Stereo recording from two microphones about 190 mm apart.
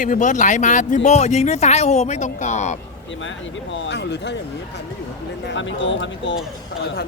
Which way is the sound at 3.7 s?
70° left (ahead or behind).